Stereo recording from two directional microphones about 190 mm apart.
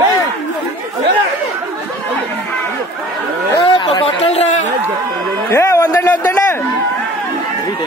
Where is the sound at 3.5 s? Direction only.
20° left (ahead or behind).